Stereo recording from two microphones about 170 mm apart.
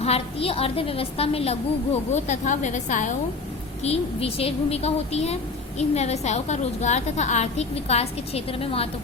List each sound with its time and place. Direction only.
0.0 s a woman's voice: 35° left (ahead or behind)
3.8 s a woman's voice: 35° left (ahead or behind)